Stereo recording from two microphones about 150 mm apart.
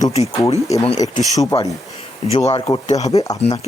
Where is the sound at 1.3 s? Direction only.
25° left (ahead or behind).